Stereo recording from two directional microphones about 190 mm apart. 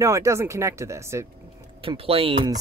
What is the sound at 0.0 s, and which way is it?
Speech, 15° right (ahead or behind).